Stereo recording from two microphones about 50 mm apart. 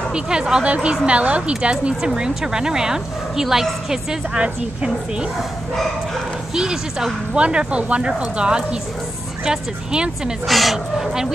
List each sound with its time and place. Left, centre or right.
0.1 s a woman's voice: centre
6.5 s a woman's voice: centre
10.4 s speech: centre